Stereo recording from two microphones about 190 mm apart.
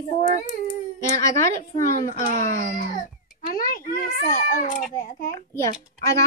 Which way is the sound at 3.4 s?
50° left (ahead or behind).